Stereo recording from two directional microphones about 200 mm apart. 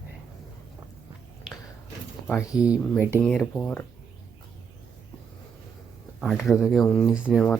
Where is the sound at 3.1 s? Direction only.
10° left (ahead or behind).